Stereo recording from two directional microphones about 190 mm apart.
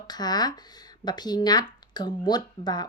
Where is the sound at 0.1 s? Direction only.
20° left (ahead or behind).